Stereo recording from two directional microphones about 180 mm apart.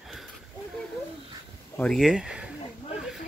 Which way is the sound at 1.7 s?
5° left (ahead or behind).